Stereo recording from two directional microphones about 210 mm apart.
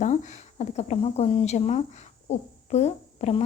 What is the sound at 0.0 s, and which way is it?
Speech, 35° left (ahead or behind).